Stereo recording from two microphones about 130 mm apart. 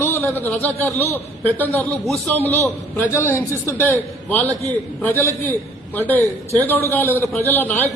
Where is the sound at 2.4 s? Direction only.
15° left (ahead or behind).